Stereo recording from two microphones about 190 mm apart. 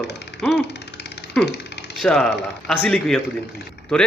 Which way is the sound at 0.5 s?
60° left (ahead or behind).